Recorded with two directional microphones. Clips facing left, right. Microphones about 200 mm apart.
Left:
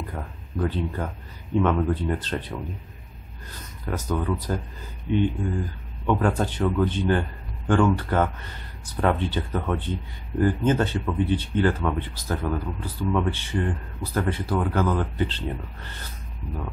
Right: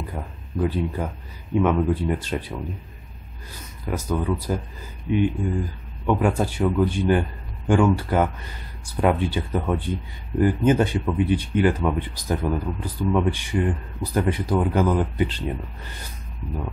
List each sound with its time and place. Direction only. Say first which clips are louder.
0.0 s speech: right 1 dB; 10° right (ahead or behind)